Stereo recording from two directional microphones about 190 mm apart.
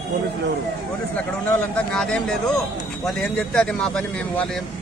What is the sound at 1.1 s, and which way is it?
Speech, 10° left (ahead or behind).